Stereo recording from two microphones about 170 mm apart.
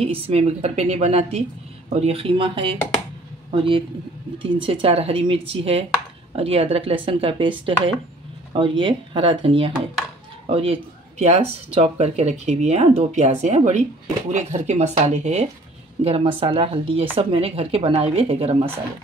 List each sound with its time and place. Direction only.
0.0 s speech: 35° right (ahead or behind)